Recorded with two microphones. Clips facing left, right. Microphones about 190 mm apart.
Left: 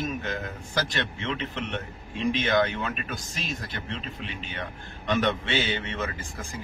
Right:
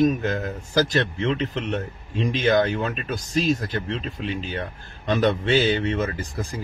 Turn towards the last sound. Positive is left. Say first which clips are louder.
# right 7 dB
turn(degrees=-35)  # may be behind; listen again after turning